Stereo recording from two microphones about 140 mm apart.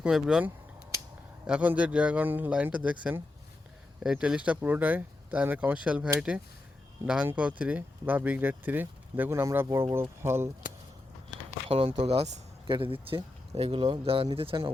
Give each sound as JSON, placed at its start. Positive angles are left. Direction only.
{"t": 0.0, "sound": "speech", "side_deg": -5}
{"t": 11.7, "sound": "speech", "side_deg": -45}
{"t": 12.6, "sound": "speech", "side_deg": -35}